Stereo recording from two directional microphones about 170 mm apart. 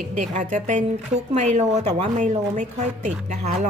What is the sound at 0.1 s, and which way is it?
A woman's voice, 45° right (ahead or behind).